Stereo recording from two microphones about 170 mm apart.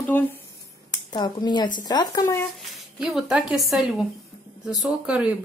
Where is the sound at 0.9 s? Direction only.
25° left (ahead or behind).